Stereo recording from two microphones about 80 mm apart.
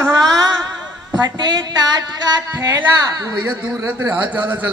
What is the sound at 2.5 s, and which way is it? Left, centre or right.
Speech, right.